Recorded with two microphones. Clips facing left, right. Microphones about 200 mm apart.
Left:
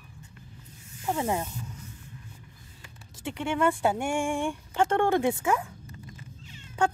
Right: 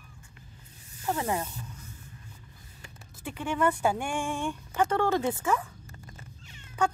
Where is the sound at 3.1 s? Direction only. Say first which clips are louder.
Left 2 dB; 25° left (ahead or behind).